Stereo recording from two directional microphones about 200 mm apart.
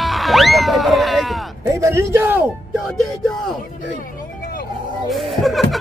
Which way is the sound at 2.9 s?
Centre (ahead or behind).